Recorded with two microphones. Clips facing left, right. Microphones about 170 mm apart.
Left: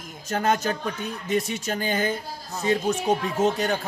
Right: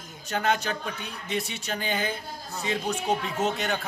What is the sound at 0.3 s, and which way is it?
Speech, 40° left (ahead or behind).